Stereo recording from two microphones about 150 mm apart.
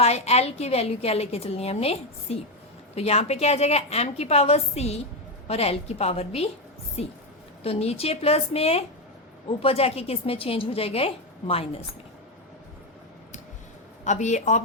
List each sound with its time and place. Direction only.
0.0 s a woman's voice: 45° left (ahead or behind)
14.0 s a woman's voice: 50° left (ahead or behind)